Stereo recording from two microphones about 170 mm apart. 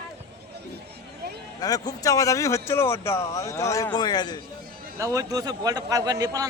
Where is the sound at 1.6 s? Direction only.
25° left (ahead or behind).